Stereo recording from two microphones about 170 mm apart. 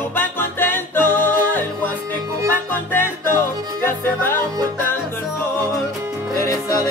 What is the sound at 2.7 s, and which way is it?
Music, 10° left (ahead or behind).